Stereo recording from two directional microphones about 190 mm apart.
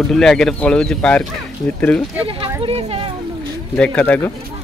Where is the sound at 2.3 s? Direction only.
30° right (ahead or behind).